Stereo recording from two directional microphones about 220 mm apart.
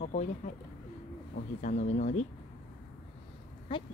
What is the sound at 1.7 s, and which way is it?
Speech, 30° left (ahead or behind).